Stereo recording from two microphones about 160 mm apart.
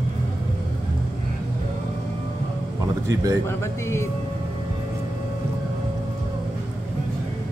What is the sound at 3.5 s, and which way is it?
Speech, 15° left (ahead or behind).